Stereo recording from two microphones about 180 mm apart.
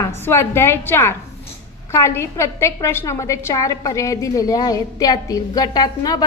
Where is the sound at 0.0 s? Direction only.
15° left (ahead or behind).